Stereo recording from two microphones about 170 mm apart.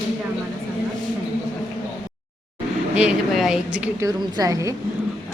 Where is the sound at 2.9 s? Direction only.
5° right (ahead or behind).